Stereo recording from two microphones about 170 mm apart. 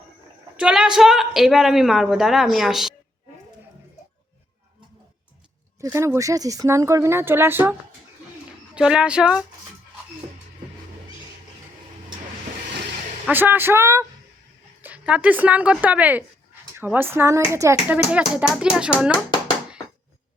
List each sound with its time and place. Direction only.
0.5 s speech: 5° right (ahead or behind)
5.8 s speech: 15° right (ahead or behind)
13.2 s speech: 10° right (ahead or behind)